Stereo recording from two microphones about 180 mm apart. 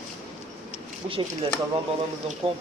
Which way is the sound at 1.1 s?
30° right (ahead or behind).